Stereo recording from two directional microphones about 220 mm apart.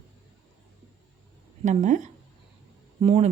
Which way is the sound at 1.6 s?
35° right (ahead or behind).